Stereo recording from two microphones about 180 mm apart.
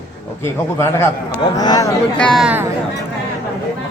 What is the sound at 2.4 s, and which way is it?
Speech, 10° right (ahead or behind).